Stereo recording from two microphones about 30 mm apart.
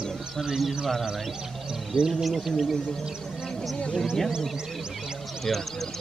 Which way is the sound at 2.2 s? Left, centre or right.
Centre.